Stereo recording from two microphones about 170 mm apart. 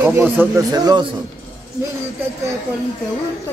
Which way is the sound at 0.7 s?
25° right (ahead or behind).